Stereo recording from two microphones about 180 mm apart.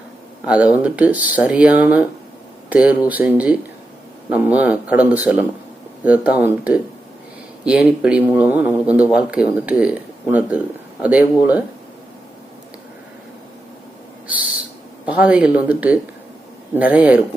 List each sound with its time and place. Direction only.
0.4 s speech: 5° right (ahead or behind)
14.3 s owl: 10° right (ahead or behind)
15.0 s speech: 5° right (ahead or behind)